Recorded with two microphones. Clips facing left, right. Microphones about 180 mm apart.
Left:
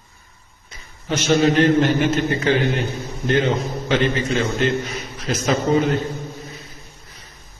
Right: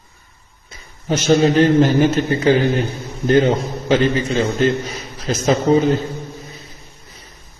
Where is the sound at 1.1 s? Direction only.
35° right (ahead or behind).